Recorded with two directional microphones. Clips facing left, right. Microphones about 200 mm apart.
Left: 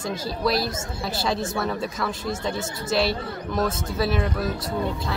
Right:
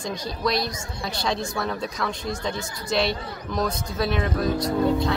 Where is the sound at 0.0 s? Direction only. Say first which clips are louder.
Left 2 dB; 5° left (ahead or behind).